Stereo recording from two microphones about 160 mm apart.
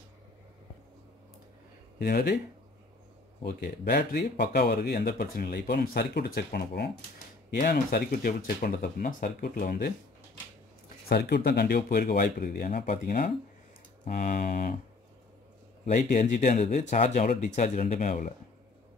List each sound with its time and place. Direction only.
2.0 s speech: 80° left
3.4 s speech: 90° left
7.5 s speech: 60° left (ahead or behind)
11.1 s speech: 85° left
12.2 s speech: 65° left (ahead or behind)
15.8 s speech: 50° left (ahead or behind)